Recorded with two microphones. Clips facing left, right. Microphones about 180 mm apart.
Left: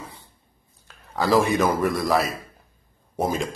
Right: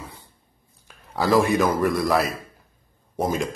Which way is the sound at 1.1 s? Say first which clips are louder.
Right 1 dB; 5° right (ahead or behind).